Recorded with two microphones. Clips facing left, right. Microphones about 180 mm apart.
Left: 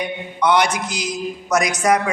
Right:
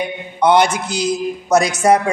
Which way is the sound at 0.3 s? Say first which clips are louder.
Right 4 dB; 30° right (ahead or behind).